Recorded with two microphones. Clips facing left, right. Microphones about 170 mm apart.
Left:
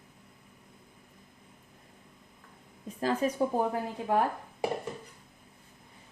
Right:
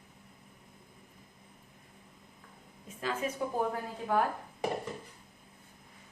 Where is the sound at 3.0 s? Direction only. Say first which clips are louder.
Left 6 dB; 35° left (ahead or behind).